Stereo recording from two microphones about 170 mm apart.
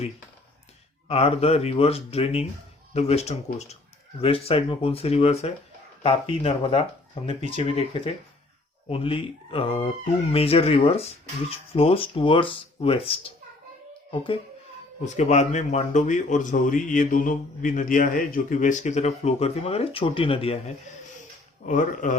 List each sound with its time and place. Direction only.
1.0 s speech: 35° left (ahead or behind)
15.0 s a man's voice: 45° left (ahead or behind)
21.7 s a man's voice: 50° left (ahead or behind)